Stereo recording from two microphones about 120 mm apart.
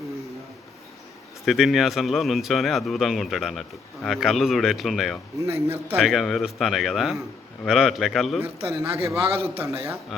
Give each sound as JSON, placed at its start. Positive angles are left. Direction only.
{"t": 1.5, "sound": "speech", "side_deg": 0}
{"t": 5.4, "sound": "a man's voice", "side_deg": -25}
{"t": 6.0, "sound": "speech", "side_deg": 0}
{"t": 8.6, "sound": "a man's voice", "side_deg": -25}
{"t": 9.2, "sound": "a man's voice", "side_deg": -55}
{"t": 9.6, "sound": "a man's voice", "side_deg": -25}